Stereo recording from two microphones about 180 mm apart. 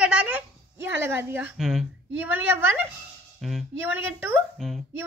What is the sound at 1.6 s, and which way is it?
Speech, centre (ahead or behind).